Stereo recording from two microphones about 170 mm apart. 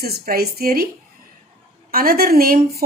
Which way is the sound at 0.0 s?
65° right (ahead or behind).